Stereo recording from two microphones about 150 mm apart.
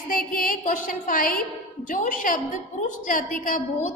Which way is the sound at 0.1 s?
70° left (ahead or behind).